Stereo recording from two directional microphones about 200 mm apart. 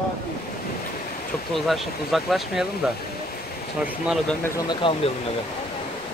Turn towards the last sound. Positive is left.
turn(degrees=25)  # may be behind; listen again after turning